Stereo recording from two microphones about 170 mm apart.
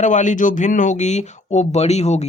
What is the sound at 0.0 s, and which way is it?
Speech, 45° left (ahead or behind).